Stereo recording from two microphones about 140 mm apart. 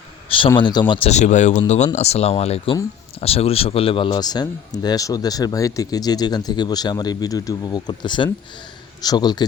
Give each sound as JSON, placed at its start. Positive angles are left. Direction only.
{"t": 0.3, "sound": "speech", "side_deg": 40}
{"t": 1.1, "sound": "a man's voice", "side_deg": 60}